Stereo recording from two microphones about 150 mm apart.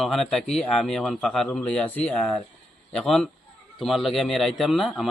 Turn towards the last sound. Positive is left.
turn(degrees=0)  # may be behind; listen again after turning